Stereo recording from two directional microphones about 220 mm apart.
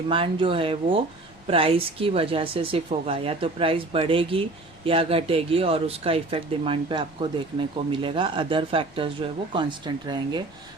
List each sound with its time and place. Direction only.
0.1 s speech: 25° right (ahead or behind)